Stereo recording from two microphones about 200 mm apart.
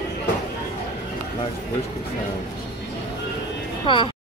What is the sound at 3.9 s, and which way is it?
Speech, 25° left (ahead or behind).